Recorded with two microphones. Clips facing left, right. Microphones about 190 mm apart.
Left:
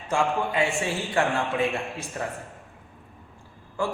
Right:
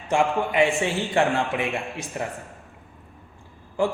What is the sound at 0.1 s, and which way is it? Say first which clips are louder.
A man's voice: right 3 dB; 20° right (ahead or behind).